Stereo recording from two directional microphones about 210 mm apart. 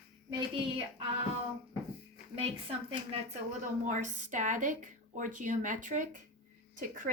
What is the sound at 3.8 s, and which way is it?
Speech, 35° right (ahead or behind).